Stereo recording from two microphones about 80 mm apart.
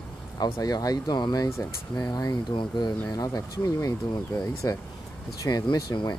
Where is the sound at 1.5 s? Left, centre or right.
Left.